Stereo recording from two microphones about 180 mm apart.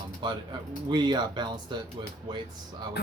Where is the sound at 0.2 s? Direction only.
25° right (ahead or behind).